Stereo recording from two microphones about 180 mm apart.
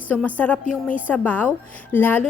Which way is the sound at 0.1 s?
10° left (ahead or behind).